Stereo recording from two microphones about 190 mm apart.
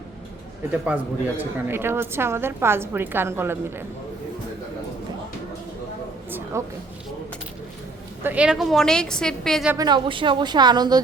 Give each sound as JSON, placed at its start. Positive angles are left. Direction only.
{"t": 0.7, "sound": "a woman's voice", "side_deg": -10}
{"t": 6.5, "sound": "a woman's voice", "side_deg": -15}
{"t": 8.2, "sound": "a woman's voice", "side_deg": -10}
{"t": 9.7, "sound": "speech", "side_deg": -20}